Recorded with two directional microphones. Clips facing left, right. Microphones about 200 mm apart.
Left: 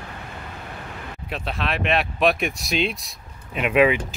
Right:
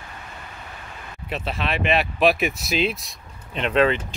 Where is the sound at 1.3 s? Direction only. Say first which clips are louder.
Right 1 dB; centre (ahead or behind).